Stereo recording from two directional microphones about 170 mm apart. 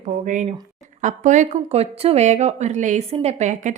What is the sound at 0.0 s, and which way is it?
A woman's voice, 45° right (ahead or behind).